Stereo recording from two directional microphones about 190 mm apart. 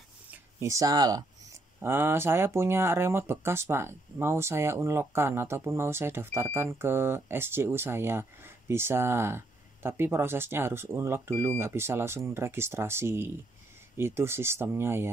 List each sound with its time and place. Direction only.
0.3 s speech: 15° right (ahead or behind)